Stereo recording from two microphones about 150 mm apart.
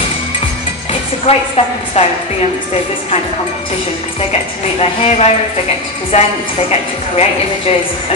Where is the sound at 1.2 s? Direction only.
45° left (ahead or behind).